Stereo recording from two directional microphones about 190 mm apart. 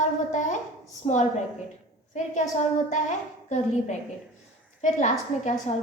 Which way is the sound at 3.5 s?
40° left (ahead or behind).